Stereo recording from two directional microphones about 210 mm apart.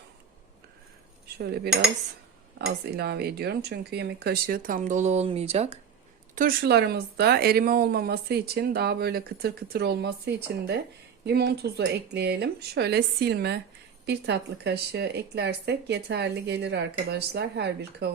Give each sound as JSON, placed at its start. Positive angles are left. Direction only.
{"t": 1.4, "sound": "speech", "side_deg": -50}
{"t": 6.3, "sound": "speech", "side_deg": -40}